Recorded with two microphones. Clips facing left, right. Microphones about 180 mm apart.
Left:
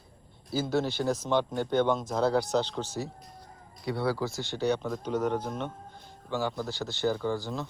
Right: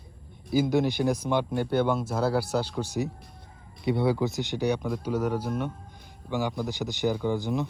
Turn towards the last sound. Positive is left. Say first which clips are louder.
# right 4 dB
turn(degrees=-20)  # may be behind; listen again after turning